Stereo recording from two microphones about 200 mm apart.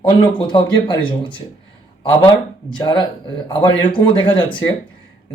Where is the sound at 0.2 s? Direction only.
20° left (ahead or behind).